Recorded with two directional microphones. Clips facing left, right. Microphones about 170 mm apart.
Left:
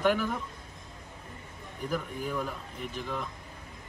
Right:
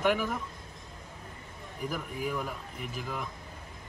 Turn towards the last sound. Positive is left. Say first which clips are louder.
# left 2 dB
turn(degrees=-5)  # may be behind; listen again after turning